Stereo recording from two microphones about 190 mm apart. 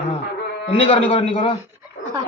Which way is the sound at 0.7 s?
30° left (ahead or behind).